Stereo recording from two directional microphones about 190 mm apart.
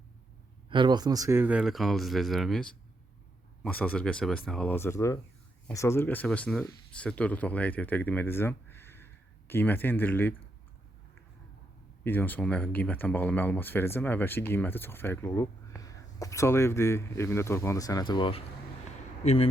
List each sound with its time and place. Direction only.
0.7 s speech: 25° right (ahead or behind); by 10.3 s 10° left (ahead or behind)
12.0 s speech: 10° left (ahead or behind); by 19.5 s 35° left (ahead or behind)